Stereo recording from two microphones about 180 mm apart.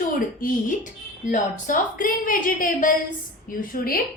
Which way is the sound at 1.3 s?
45° left (ahead or behind).